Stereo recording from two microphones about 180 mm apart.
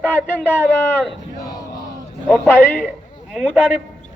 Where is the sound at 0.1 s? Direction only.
10° left (ahead or behind).